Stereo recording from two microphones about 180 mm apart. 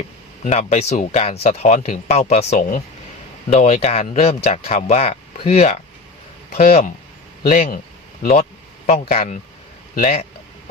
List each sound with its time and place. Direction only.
0.4 s speech: 40° left (ahead or behind)
6.6 s speech: 50° left (ahead or behind)